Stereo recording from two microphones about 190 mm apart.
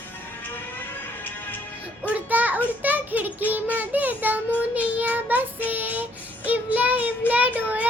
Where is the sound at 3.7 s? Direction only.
10° right (ahead or behind).